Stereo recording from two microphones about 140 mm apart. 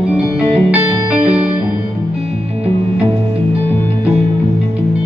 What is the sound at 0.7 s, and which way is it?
Music, 10° right (ahead or behind).